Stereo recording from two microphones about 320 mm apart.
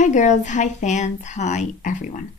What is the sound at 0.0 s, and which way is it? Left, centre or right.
Speech, left.